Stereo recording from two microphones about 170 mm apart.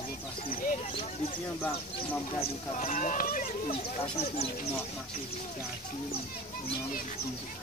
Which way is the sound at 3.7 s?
35° left (ahead or behind).